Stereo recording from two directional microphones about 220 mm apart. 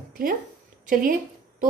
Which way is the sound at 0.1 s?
40° right (ahead or behind).